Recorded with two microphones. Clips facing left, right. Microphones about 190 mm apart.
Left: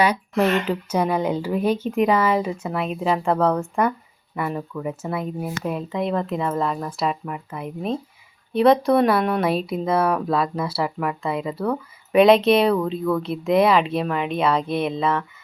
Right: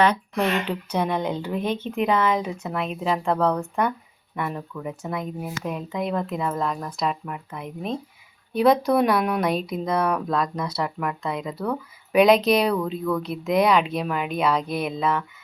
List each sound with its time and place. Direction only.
0.7 s speech: 5° left (ahead or behind)